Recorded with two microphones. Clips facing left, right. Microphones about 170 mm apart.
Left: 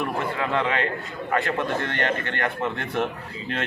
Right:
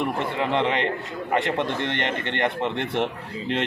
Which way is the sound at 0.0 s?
20° right (ahead or behind).